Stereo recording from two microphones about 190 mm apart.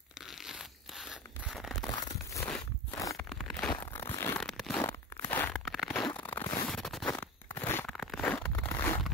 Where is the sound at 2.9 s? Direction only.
15° left (ahead or behind).